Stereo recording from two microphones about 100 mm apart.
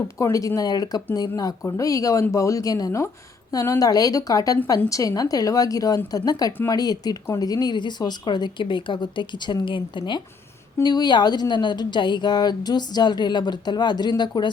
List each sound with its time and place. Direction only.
0.2 s speech: 35° left (ahead or behind)